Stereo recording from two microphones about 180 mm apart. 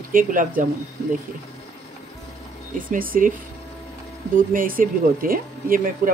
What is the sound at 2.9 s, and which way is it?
Speech, 50° right (ahead or behind).